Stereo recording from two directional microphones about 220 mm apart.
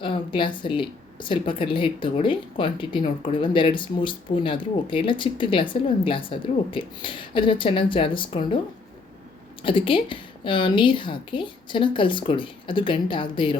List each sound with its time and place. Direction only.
0.0 s speech: 20° left (ahead or behind)
9.6 s speech: 25° left (ahead or behind)